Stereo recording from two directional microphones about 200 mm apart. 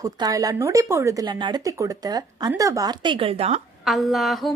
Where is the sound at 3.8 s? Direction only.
Centre (ahead or behind).